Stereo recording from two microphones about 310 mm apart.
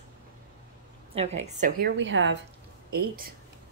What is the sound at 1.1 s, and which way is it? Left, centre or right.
A woman's voice, centre.